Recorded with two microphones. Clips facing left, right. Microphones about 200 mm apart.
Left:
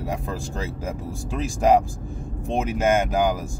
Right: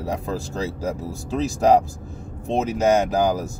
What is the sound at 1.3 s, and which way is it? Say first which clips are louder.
Speech: right 2 dB; 40° right (ahead or behind).